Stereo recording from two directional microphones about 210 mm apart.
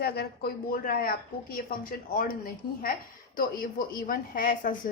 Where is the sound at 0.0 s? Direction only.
50° left (ahead or behind).